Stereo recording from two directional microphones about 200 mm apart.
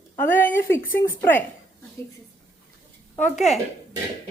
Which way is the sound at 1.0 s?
10° left (ahead or behind).